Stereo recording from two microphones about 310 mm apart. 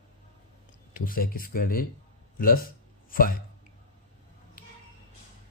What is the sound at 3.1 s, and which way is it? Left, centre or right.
Speech, left.